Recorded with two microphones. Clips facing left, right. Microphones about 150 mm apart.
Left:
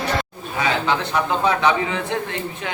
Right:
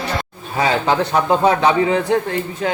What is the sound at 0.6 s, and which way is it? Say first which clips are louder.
A man's voice: right 4 dB; 35° right (ahead or behind).